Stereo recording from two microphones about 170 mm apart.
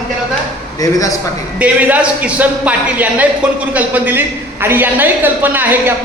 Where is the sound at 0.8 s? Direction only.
20° left (ahead or behind).